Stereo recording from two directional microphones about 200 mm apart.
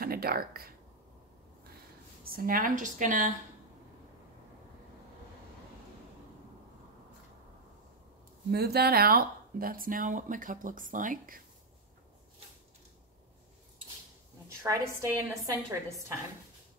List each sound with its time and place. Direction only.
0.0 s speech: 50° right (ahead or behind)
2.2 s a woman's voice: 45° right (ahead or behind)
8.5 s speech: 50° right (ahead or behind)
14.6 s a woman's voice: 15° right (ahead or behind)